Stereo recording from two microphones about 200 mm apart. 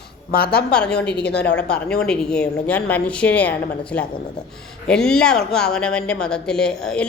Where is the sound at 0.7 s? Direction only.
5° left (ahead or behind).